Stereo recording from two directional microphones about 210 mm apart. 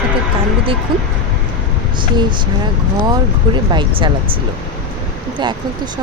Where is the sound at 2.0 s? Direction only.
20° right (ahead or behind).